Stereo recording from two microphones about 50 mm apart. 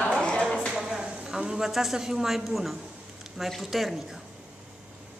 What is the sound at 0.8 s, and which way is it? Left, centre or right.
A man's voice, centre.